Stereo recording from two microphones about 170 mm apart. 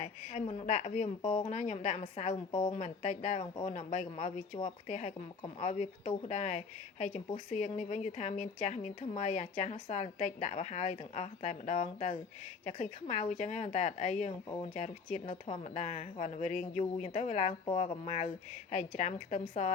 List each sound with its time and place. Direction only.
0.0 s a woman's voice: 45° left (ahead or behind)